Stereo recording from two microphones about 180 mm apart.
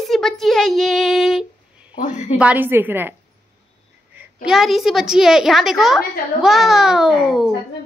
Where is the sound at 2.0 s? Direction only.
40° left (ahead or behind).